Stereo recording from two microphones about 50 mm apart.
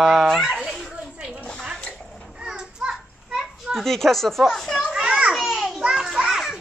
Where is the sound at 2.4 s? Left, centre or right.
Centre.